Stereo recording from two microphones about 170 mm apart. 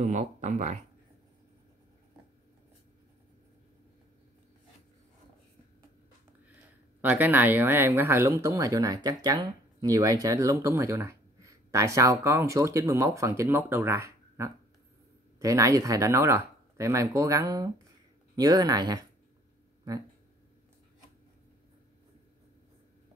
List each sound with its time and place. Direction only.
0.0 s speech: 45° right (ahead or behind)
7.0 s speech: 10° right (ahead or behind)